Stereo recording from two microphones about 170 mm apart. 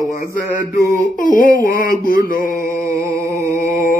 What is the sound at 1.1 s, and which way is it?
Mantra, 55° left (ahead or behind).